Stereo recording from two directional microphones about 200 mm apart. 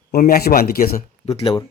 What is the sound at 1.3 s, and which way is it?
Speech, 25° left (ahead or behind).